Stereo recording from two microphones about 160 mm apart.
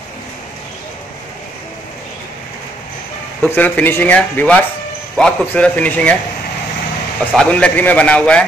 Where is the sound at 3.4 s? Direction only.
10° left (ahead or behind).